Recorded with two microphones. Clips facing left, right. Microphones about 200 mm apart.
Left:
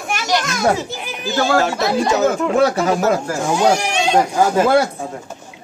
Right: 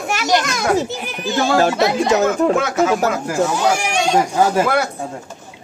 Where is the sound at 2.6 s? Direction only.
35° left (ahead or behind).